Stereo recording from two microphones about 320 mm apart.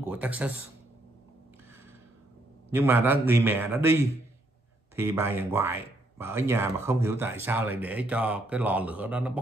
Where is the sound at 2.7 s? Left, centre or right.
Centre.